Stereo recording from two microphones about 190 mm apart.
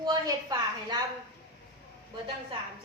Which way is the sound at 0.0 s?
20° right (ahead or behind).